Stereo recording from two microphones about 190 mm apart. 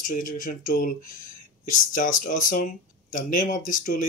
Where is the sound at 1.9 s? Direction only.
45° left (ahead or behind).